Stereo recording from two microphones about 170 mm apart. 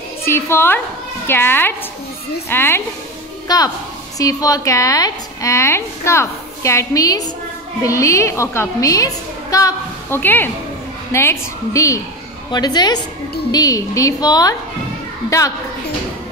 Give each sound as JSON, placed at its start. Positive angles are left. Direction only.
{"t": 0.2, "sound": "a woman's voice", "side_deg": 15}